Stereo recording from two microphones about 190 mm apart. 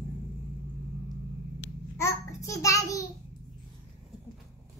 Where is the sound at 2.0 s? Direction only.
15° left (ahead or behind).